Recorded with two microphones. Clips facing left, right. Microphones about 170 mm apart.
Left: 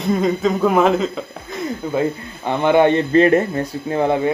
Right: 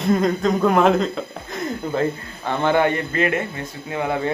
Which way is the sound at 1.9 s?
15° left (ahead or behind).